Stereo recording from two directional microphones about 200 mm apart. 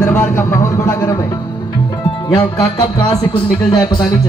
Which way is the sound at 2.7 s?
20° left (ahead or behind).